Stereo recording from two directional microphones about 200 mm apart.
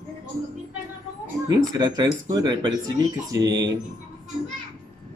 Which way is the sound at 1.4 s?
20° right (ahead or behind).